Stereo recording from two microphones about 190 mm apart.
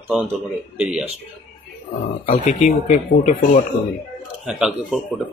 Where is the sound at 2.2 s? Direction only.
35° left (ahead or behind).